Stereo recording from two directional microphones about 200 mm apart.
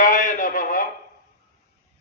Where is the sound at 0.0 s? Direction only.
40° left (ahead or behind).